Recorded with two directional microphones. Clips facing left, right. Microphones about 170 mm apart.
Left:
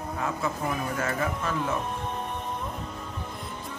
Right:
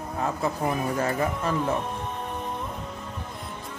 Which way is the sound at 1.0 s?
30° right (ahead or behind).